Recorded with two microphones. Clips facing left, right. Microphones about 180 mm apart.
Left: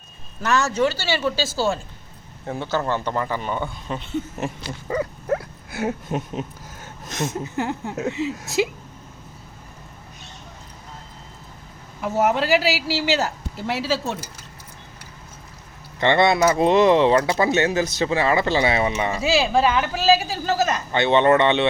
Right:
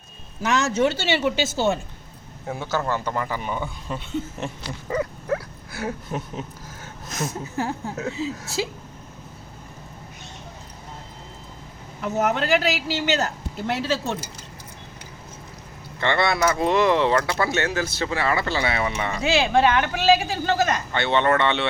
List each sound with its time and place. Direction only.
0.4 s speech: 20° right (ahead or behind)
2.5 s speech: 10° right (ahead or behind)
4.9 s dog: 30° left (ahead or behind)
7.6 s speech: 20° left (ahead or behind)
8.1 s speech: 35° right (ahead or behind)
12.5 s a man's voice: 5° left (ahead or behind)
16.0 s speech: 20° left (ahead or behind)
19.1 s a man's voice: 5° left (ahead or behind)
20.9 s speech: 20° left (ahead or behind)